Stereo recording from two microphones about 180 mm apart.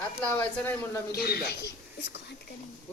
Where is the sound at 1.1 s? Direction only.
60° left (ahead or behind).